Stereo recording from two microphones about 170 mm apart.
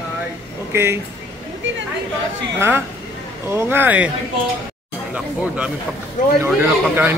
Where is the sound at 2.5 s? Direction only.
15° right (ahead or behind).